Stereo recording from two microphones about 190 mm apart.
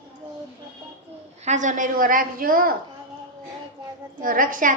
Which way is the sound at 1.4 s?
40° right (ahead or behind).